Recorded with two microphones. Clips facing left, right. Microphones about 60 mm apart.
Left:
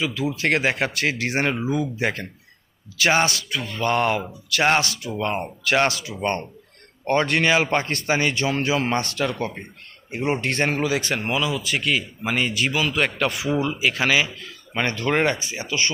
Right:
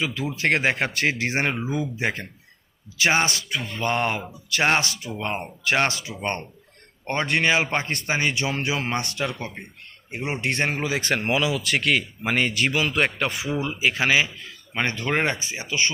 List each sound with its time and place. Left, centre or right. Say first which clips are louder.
0.0 s speech: left 1 dB; right
11.3 s speech: right 1 dB; right
12.2 s speech: even; right
13.0 s speech: left 1 dB; right